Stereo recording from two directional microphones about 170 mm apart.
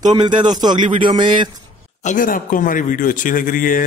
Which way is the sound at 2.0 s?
50° left (ahead or behind).